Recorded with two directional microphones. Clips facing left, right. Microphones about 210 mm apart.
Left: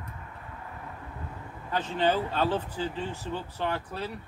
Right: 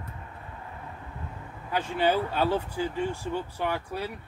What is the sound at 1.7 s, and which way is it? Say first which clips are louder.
Speech: right 1 dB; 10° right (ahead or behind).